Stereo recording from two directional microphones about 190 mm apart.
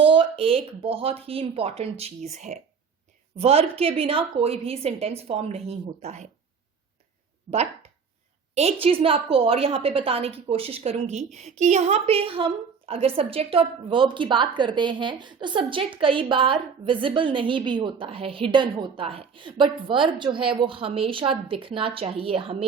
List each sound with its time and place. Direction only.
0.0 s speech: 25° right (ahead or behind)
7.5 s a woman's voice: 35° right (ahead or behind)